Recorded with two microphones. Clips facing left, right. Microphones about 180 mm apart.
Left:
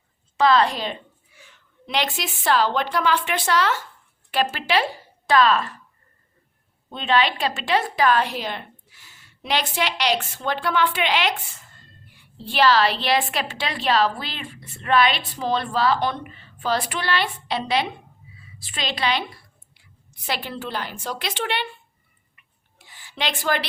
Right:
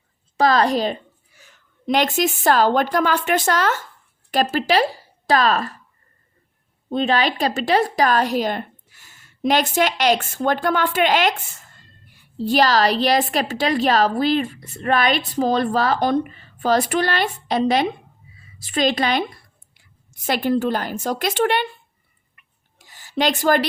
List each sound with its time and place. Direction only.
0.3 s a woman's voice: 40° right (ahead or behind)
6.9 s a woman's voice: 40° right (ahead or behind)
22.8 s a sound: 40° right (ahead or behind)